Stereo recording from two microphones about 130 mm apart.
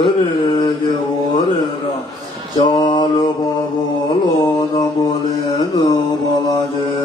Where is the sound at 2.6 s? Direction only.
40° left (ahead or behind).